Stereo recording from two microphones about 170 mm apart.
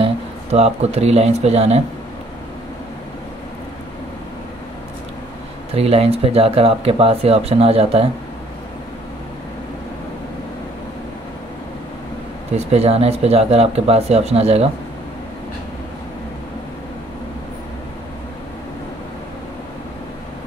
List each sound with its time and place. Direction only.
0.0 s speech: 40° right (ahead or behind)
5.8 s speech: 35° right (ahead or behind)
12.5 s speech: 35° right (ahead or behind)